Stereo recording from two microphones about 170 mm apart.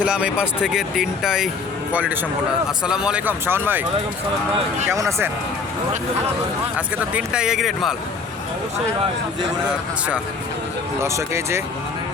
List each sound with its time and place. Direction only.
0.0 s speech: 5° right (ahead or behind)
4.9 s speech: 15° right (ahead or behind)
6.7 s speech: 10° right (ahead or behind)
11.0 s speech: 15° right (ahead or behind)